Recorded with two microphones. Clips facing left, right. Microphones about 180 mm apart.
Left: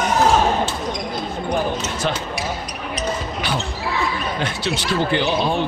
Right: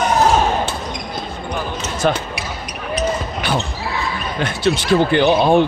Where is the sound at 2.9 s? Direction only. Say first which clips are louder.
Right 5 dB; 50° right (ahead or behind).